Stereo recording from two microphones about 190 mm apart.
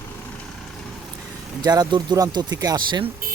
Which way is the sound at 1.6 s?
20° right (ahead or behind).